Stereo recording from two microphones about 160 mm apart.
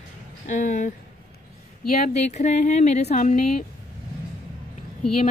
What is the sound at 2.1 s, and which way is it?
Speech, 45° left (ahead or behind).